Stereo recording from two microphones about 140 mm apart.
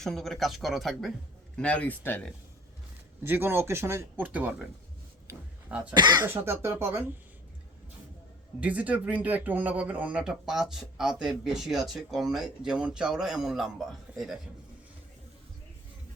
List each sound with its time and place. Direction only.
0.0 s speech: centre (ahead or behind)
3.2 s speech: 15° right (ahead or behind)
5.3 s a sound: 10° right (ahead or behind)
5.9 s speech: 30° right (ahead or behind)
6.2 s speech: 15° right (ahead or behind)
8.6 s speech: 10° right (ahead or behind)